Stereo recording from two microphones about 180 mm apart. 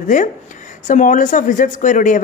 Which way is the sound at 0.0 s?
45° left (ahead or behind).